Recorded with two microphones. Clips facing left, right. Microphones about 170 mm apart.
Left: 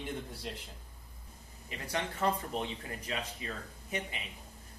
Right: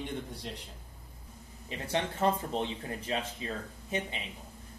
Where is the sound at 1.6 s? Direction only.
30° right (ahead or behind).